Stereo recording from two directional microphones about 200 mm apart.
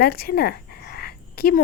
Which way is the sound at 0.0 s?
50° left (ahead or behind).